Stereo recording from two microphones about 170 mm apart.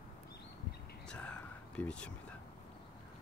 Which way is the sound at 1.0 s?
5° left (ahead or behind).